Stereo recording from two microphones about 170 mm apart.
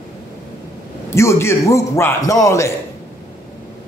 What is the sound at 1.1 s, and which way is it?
A man's voice, 15° left (ahead or behind).